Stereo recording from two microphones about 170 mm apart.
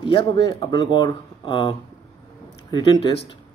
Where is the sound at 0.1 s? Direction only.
30° left (ahead or behind).